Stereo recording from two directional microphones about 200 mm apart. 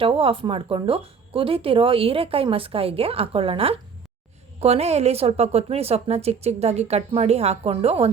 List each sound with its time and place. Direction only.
0.0 s a woman's voice: 25° right (ahead or behind)